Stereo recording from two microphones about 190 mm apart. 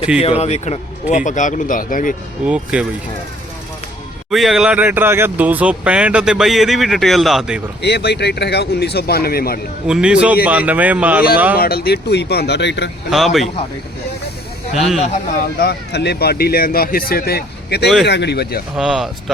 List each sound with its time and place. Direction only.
0.2 s speech: 35° left (ahead or behind)
2.5 s speech: 5° right (ahead or behind)
4.3 s speech: centre (ahead or behind)
7.8 s speech: 60° left (ahead or behind)
9.8 s speech: 5° right (ahead or behind)
11.5 s speech: 50° left (ahead or behind)
13.1 s speech: centre (ahead or behind)
14.8 s speech: 35° left (ahead or behind)
15.5 s speech: 60° left (ahead or behind)
18.8 s speech: 5° right (ahead or behind)